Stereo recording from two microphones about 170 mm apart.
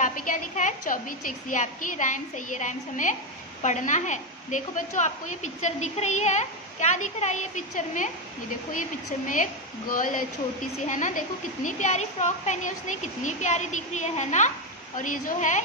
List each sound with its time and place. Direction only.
0.0 s a woman's voice: 50° left (ahead or behind)
9.9 s a woman's voice: 50° left (ahead or behind)